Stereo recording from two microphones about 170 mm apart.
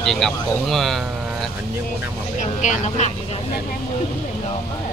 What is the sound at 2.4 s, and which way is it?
Speech, 45° left (ahead or behind).